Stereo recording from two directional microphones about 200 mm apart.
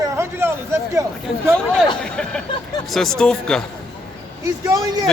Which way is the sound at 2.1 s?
5° left (ahead or behind).